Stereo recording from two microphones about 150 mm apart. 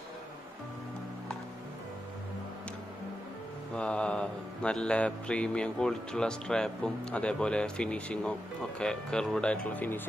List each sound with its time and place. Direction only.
3.7 s mantra: 5° left (ahead or behind)